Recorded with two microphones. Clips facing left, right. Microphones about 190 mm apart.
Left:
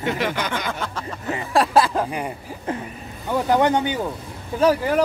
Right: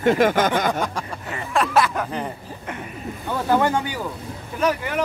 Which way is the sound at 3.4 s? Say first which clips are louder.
Left 1 dB; 15° left (ahead or behind).